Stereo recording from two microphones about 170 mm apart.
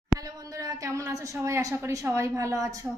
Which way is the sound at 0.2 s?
20° right (ahead or behind).